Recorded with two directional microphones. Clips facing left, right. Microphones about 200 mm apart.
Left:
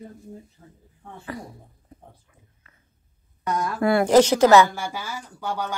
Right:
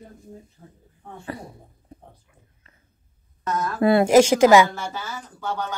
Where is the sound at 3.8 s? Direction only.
20° right (ahead or behind).